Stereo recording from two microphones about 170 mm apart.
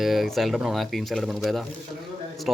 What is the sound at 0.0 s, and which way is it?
Speech, centre (ahead or behind).